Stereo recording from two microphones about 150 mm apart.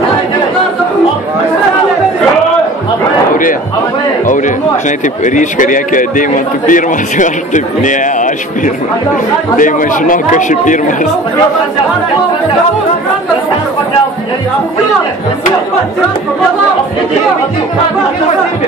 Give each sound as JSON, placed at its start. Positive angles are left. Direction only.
{"t": 4.3, "sound": "a man's voice", "side_deg": 60}